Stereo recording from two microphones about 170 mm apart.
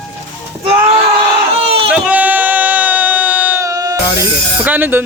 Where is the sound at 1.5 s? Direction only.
35° right (ahead or behind).